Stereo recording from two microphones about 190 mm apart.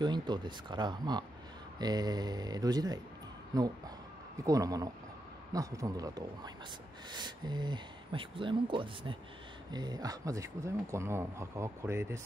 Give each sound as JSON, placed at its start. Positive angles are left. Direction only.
{"t": 0.0, "sound": "speech", "side_deg": -25}